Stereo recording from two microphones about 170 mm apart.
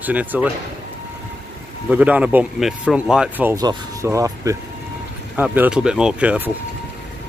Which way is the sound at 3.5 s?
20° right (ahead or behind).